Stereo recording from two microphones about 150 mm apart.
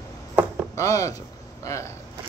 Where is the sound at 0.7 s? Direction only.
20° left (ahead or behind).